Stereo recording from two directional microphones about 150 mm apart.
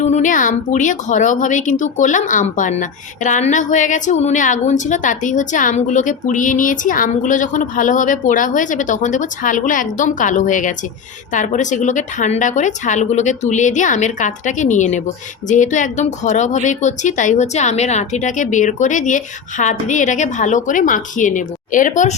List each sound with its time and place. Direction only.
0.0 s a woman's voice: 55° left (ahead or behind)